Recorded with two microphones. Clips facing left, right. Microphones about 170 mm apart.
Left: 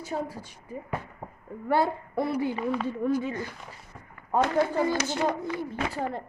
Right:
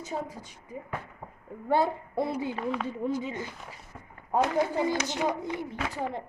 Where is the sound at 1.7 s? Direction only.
20° right (ahead or behind).